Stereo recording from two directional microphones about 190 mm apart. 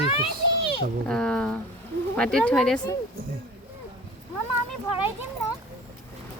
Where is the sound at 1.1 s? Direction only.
5° left (ahead or behind).